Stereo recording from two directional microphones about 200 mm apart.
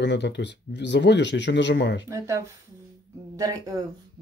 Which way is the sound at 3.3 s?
15° right (ahead or behind).